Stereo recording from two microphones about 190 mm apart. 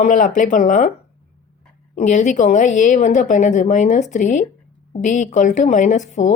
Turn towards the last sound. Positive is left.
turn(degrees=40)  # may be behind; listen again after turning